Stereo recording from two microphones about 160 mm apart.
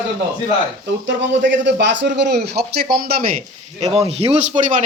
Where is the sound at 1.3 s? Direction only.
90° right; by 3.2 s 70° right (ahead or behind).